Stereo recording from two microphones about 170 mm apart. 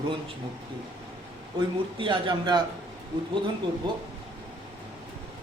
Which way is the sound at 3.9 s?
30° right (ahead or behind).